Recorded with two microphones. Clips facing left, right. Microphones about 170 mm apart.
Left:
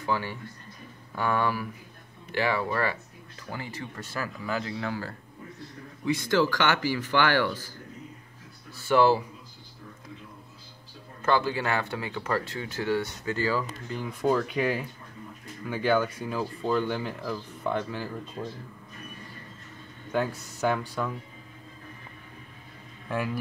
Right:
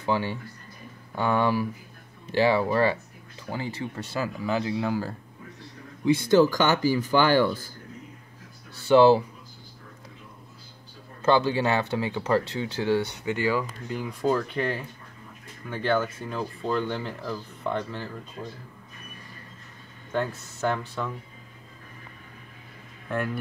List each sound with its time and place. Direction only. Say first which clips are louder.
0.0 s speech: right 3 dB; 25° right (ahead or behind)
6.0 s speech: right 6 dB; 30° right (ahead or behind)
6.5 s speech: right 4 dB; 15° right (ahead or behind)
8.8 s speech: right 5 dB; 25° right (ahead or behind)
11.2 s speech: right 4 dB; 25° right (ahead or behind)
14.2 s speech: left 1 dB; centre (ahead or behind)
20.1 s speech: even; 5° left (ahead or behind)
23.0 s speech: right 1 dB; centre (ahead or behind)